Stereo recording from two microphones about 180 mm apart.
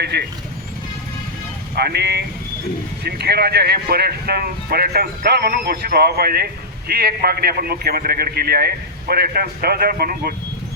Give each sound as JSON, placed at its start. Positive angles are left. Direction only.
{"t": 0.0, "sound": "speech", "side_deg": -65}
{"t": 1.7, "sound": "speech", "side_deg": -65}